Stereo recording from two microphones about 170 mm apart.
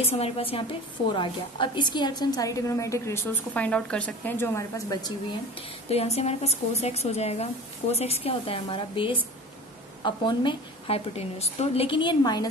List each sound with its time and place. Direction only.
0.0 s a woman's voice: 35° left (ahead or behind); by 4.8 s 15° left (ahead or behind)
5.9 s a woman's voice: 40° left (ahead or behind)